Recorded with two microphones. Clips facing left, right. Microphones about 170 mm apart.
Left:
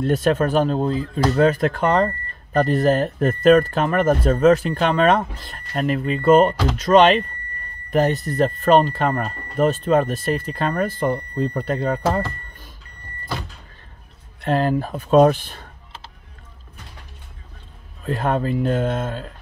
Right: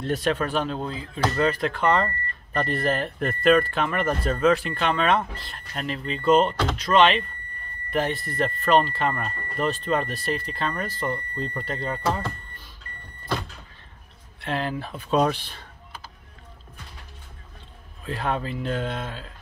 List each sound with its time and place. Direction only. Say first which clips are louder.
0.0 s speech: left 6 dB; 45° left (ahead or behind)
14.4 s speech: left 8 dB; 45° left (ahead or behind)
18.0 s speech: left 6 dB; 45° left (ahead or behind)